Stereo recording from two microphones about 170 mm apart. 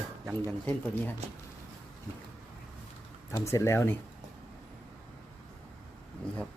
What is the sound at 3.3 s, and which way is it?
Speech, 20° left (ahead or behind).